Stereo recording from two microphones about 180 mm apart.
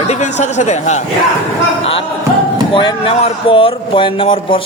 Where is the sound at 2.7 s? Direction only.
30° left (ahead or behind).